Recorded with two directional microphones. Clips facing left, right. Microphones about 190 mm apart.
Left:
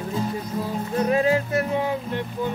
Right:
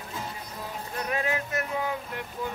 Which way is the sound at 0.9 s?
30° left (ahead or behind).